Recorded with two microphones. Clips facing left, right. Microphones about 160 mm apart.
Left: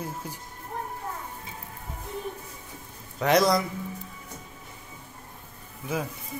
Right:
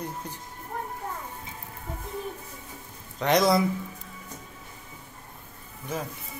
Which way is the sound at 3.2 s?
Centre (ahead or behind).